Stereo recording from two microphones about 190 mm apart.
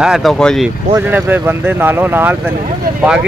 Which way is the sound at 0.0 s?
Centre (ahead or behind).